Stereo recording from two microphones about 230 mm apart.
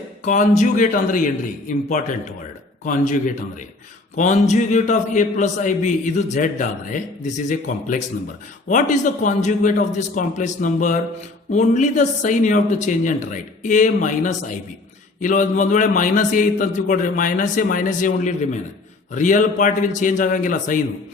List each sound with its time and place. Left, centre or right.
0.3 s a man's voice: left